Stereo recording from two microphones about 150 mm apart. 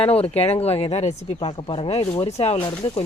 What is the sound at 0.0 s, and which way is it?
Speech, 40° left (ahead or behind).